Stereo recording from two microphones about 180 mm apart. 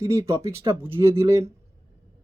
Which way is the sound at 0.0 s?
15° right (ahead or behind).